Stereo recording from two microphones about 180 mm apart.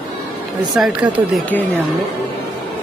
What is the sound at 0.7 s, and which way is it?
Speech, centre (ahead or behind).